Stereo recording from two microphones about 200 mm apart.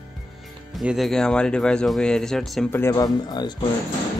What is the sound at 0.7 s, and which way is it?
Speech, centre (ahead or behind).